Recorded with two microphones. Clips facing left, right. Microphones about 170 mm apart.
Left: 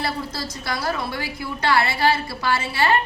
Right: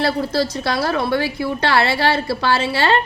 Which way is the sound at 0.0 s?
70° right (ahead or behind).